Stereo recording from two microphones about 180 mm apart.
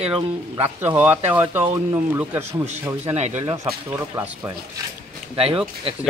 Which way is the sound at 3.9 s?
15° right (ahead or behind).